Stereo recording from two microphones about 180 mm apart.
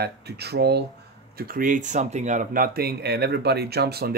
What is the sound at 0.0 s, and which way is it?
Speech, 65° right (ahead or behind).